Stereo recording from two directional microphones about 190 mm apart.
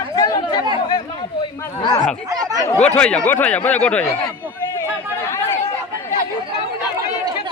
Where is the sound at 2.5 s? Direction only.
15° left (ahead or behind).